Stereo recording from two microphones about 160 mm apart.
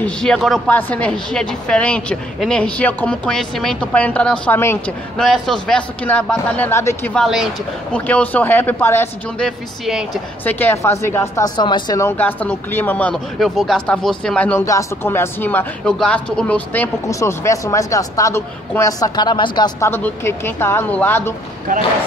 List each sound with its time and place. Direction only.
0.0 s a man's voice: 5° left (ahead or behind)
5.1 s speech: 5° left (ahead or behind)
7.2 s a man's voice: 5° right (ahead or behind)
7.9 s speech: 10° left (ahead or behind)
9.8 s a man's voice: centre (ahead or behind)
10.4 s speech: 10° left (ahead or behind)
19.9 s speech: 15° left (ahead or behind)